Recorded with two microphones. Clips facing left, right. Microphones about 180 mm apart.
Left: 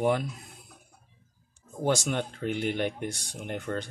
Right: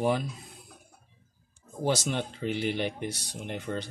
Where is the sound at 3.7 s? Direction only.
10° right (ahead or behind).